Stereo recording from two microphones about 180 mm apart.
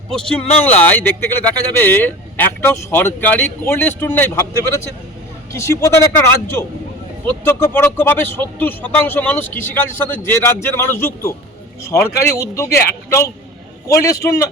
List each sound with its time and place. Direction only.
0.6 s speech: 10° left (ahead or behind)